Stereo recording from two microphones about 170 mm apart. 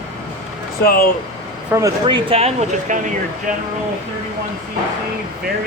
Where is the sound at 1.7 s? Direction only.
15° right (ahead or behind).